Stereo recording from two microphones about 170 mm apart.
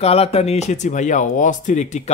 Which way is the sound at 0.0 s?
35° left (ahead or behind).